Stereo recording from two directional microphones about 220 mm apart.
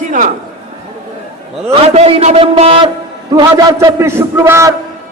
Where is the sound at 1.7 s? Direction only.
30° right (ahead or behind).